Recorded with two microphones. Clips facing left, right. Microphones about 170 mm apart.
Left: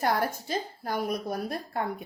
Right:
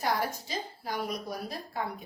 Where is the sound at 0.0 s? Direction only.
55° left (ahead or behind).